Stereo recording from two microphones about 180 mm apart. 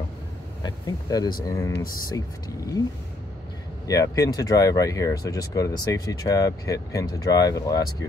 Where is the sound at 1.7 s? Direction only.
50° left (ahead or behind).